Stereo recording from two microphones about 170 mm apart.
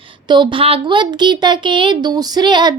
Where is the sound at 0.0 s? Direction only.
30° right (ahead or behind).